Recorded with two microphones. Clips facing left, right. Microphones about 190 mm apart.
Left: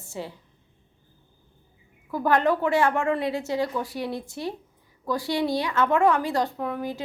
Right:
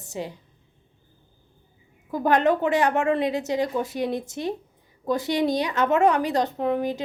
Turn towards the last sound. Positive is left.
turn(degrees=-20)  # may be behind; listen again after turning